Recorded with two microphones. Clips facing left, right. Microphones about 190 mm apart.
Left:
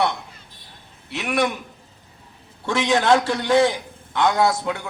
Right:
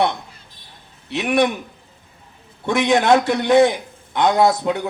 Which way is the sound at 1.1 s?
20° right (ahead or behind).